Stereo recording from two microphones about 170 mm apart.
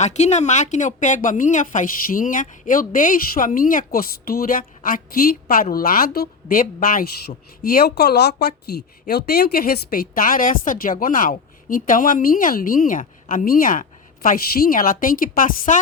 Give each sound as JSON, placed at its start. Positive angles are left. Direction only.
{"t": 0.0, "sound": "speech", "side_deg": 40}